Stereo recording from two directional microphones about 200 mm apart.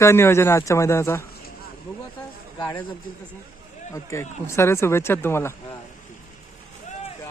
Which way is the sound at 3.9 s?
15° left (ahead or behind).